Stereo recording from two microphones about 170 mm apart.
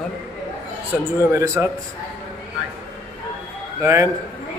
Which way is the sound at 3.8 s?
15° right (ahead or behind).